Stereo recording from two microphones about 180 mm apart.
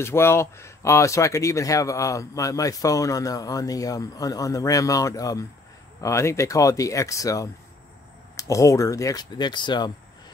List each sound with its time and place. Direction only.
0.0 s speech: 15° left (ahead or behind)